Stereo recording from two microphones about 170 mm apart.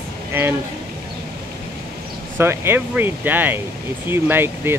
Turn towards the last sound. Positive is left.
turn(degrees=-15)  # may be behind; listen again after turning